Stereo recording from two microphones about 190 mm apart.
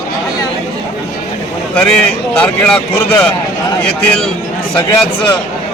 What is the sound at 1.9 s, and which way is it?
A man's voice, 5° left (ahead or behind).